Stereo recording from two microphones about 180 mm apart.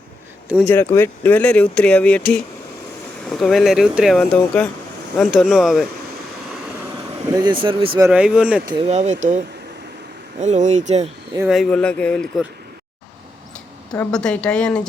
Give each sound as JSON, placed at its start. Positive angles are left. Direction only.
{"t": 0.6, "sound": "speech", "side_deg": 15}
{"t": 7.3, "sound": "speech", "side_deg": -25}
{"t": 8.1, "sound": "speech", "side_deg": -5}
{"t": 8.6, "sound": "speech", "side_deg": -30}
{"t": 10.4, "sound": "speech", "side_deg": -40}
{"t": 11.4, "sound": "speech", "side_deg": 0}
{"t": 14.0, "sound": "speech", "side_deg": 5}